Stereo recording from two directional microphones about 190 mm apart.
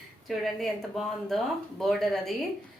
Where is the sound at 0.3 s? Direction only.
Centre (ahead or behind).